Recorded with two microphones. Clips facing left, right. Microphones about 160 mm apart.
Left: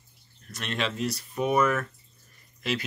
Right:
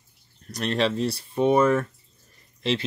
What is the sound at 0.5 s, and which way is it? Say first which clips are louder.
Speech: right 7 dB; 35° right (ahead or behind).